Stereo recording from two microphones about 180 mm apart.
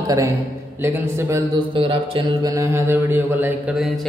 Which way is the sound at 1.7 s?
30° right (ahead or behind).